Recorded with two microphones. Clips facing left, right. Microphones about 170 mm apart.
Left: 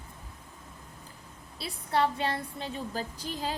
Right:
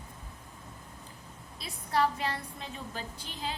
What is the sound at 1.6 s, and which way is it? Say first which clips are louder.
A woman's voice: left 1 dB; 30° left (ahead or behind).